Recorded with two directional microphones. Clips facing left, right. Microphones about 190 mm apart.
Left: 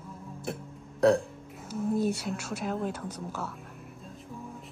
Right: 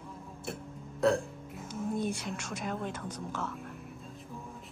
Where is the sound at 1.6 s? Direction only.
5° left (ahead or behind).